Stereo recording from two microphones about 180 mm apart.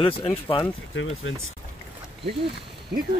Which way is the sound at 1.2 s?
90° left.